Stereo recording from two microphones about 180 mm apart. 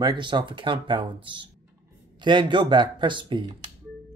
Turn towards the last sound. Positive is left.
turn(degrees=-25)  # may be behind; listen again after turning